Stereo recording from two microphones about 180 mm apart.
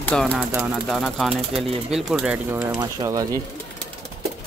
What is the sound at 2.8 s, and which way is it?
Speech, 20° right (ahead or behind).